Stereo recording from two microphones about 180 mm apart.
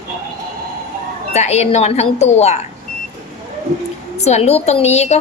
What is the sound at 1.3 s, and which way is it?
A woman's voice, 40° left (ahead or behind).